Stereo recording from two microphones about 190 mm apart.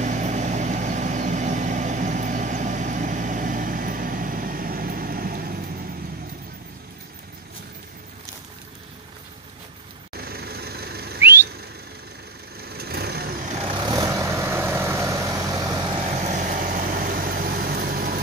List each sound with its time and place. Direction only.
0.0 s vehicle: 40° right (ahead or behind)
10.1 s a sound: 55° right (ahead or behind)
11.1 s whistling: 10° right (ahead or behind)
12.6 s vehicle: 55° right (ahead or behind)
13.6 s vehicle: 25° right (ahead or behind)
16.0 s vehicle: 40° right (ahead or behind)